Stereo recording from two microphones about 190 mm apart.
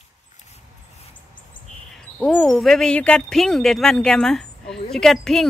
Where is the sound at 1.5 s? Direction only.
25° left (ahead or behind).